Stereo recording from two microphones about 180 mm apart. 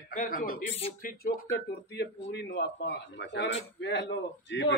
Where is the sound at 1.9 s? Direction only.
70° left (ahead or behind).